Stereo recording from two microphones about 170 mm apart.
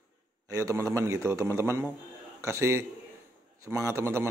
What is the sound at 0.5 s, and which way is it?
A man's voice, 20° right (ahead or behind).